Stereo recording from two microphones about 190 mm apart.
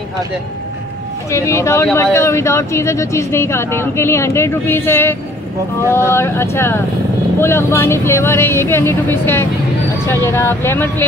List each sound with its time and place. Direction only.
1.3 s speech: 15° left (ahead or behind)